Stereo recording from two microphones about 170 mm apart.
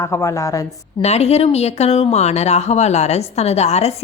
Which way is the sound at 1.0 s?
40° left (ahead or behind).